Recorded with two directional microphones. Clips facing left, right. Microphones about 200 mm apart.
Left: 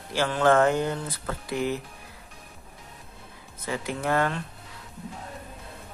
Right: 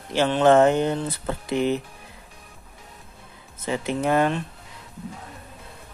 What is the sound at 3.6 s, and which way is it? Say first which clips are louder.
Speech: right 5 dB; 20° right (ahead or behind).